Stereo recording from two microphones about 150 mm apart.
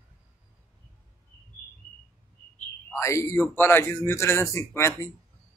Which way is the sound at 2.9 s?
20° left (ahead or behind).